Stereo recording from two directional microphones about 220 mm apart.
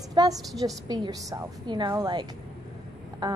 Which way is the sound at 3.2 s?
20° right (ahead or behind).